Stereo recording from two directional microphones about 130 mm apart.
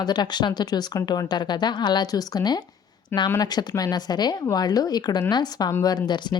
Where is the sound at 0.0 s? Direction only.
35° left (ahead or behind).